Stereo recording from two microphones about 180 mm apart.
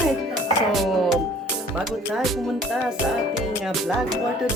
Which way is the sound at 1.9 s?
Centre (ahead or behind).